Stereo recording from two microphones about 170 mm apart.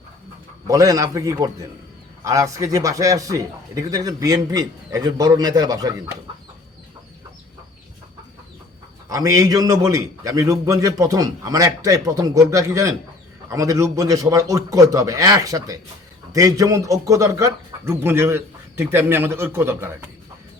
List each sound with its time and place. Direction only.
0.7 s a man's voice: 20° right (ahead or behind)
9.0 s a man's voice: 20° right (ahead or behind)